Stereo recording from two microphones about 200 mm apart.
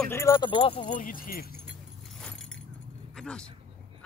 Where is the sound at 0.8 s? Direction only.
40° left (ahead or behind).